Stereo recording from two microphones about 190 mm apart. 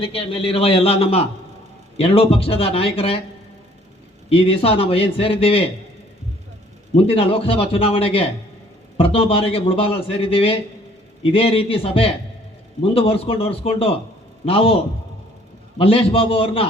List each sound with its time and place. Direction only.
0.0 s a man's voice: 30° left (ahead or behind)
4.3 s a man's voice: 30° left (ahead or behind)
6.9 s a man's voice: 30° left (ahead or behind)
15.8 s a man's voice: 30° left (ahead or behind)